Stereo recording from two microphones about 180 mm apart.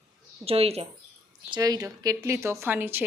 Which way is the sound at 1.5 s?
20° right (ahead or behind).